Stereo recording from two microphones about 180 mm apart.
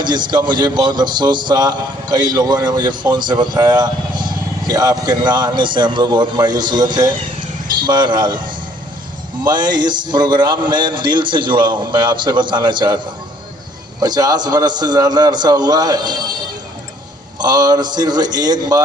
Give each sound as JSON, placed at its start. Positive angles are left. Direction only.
{"t": 0.0, "sound": "speech", "side_deg": -25}
{"t": 14.0, "sound": "speech", "side_deg": -20}
{"t": 17.3, "sound": "speech", "side_deg": -20}